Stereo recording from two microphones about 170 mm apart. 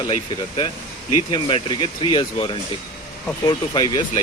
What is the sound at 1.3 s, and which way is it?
Speech, 30° left (ahead or behind).